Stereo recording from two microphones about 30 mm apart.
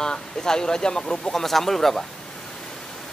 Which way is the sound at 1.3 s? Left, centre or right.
Centre.